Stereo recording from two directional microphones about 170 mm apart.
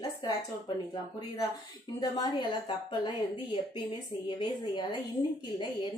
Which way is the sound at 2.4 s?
30° left (ahead or behind).